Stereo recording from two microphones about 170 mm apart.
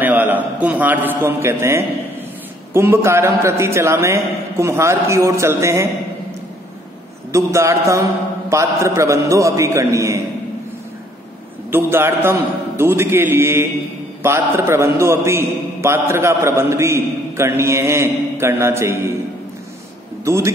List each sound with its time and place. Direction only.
0.0 s a man's voice: 10° right (ahead or behind)
7.3 s a man's voice: 15° right (ahead or behind)
11.7 s a man's voice: 15° right (ahead or behind)
20.2 s a man's voice: 15° right (ahead or behind)